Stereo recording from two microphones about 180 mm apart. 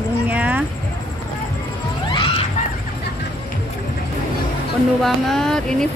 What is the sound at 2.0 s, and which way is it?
Music, 25° left (ahead or behind).